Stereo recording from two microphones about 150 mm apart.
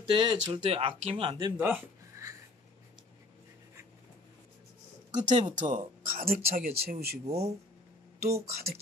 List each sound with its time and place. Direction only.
0.0 s speech: 35° right (ahead or behind)
1.6 s a sound: 15° right (ahead or behind)
5.1 s speech: 50° right (ahead or behind)
6.2 s speech: 75° right (ahead or behind)
6.8 s speech: 90° right
7.2 s speech: 45° right (ahead or behind)
8.5 s speech: 90° right